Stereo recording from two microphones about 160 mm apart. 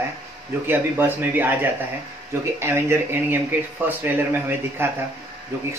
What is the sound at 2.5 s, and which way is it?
Speech, 15° right (ahead or behind).